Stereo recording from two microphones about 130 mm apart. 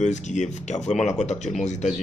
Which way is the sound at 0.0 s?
65° left (ahead or behind).